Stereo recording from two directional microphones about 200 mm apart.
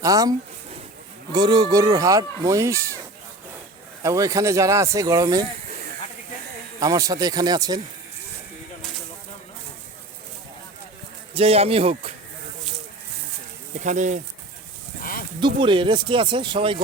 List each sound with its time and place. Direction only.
0.0 s speech: 15° right (ahead or behind)
4.0 s speech: 15° right (ahead or behind)
6.7 s speech: 15° right (ahead or behind)
11.3 s speech: 30° right (ahead or behind)
13.7 s speech: 35° right (ahead or behind)
15.4 s speech: 25° right (ahead or behind)